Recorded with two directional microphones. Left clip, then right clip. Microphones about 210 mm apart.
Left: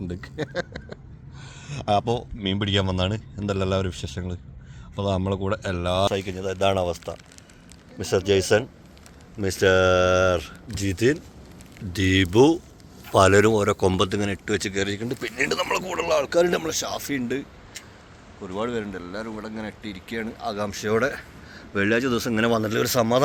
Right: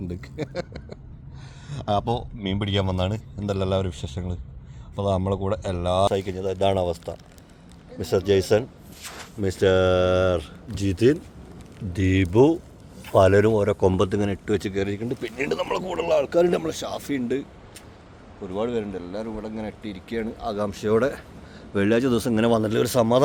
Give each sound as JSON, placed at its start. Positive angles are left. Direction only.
{"t": 0.1, "sound": "speech", "side_deg": 5}
{"t": 11.9, "sound": "speech", "side_deg": -5}
{"t": 18.4, "sound": "speech", "side_deg": 0}